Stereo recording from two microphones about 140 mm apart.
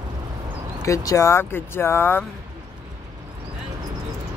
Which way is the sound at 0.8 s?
25° left (ahead or behind).